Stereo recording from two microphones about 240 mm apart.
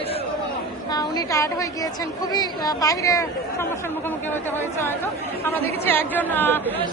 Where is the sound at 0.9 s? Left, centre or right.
Centre.